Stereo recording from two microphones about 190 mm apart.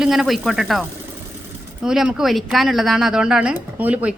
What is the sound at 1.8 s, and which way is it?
A woman's voice, 5° right (ahead or behind).